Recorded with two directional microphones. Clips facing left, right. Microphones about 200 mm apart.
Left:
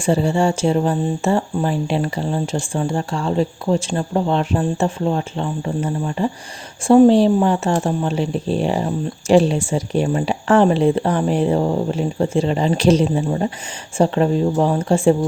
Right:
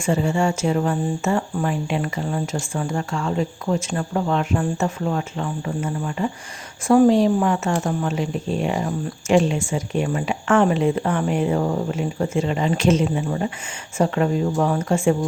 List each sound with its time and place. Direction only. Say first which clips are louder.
0.0 s speech: left 3 dB; 35° left (ahead or behind)